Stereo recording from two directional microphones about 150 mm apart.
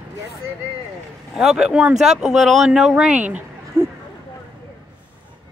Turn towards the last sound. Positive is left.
turn(degrees=-10)  # may be behind; listen again after turning